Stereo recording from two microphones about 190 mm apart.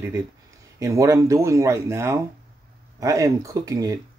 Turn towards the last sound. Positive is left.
turn(degrees=-20)  # may be behind; listen again after turning